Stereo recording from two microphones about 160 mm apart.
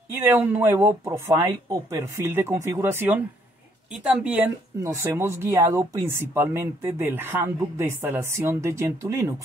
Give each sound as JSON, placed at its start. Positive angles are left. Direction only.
{"t": 0.1, "sound": "speech", "side_deg": -15}